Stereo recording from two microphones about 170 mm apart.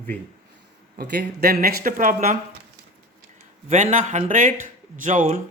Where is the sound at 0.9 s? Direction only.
70° right (ahead or behind); by 2.4 s 50° right (ahead or behind).